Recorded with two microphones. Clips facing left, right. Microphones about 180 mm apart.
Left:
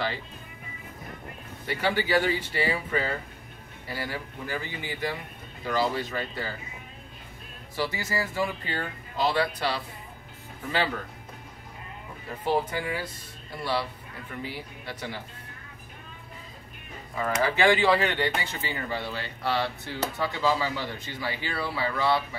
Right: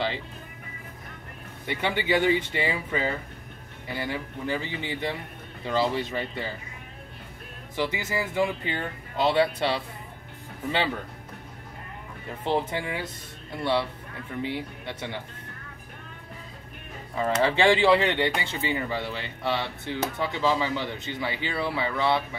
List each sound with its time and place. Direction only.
1.7 s speech: 20° right (ahead or behind)
7.7 s speech: 20° right (ahead or behind)
12.6 s speech: 25° right (ahead or behind)
17.2 s speech: 25° right (ahead or behind)